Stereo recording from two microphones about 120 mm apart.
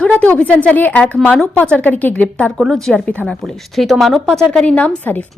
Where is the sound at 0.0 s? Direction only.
10° left (ahead or behind).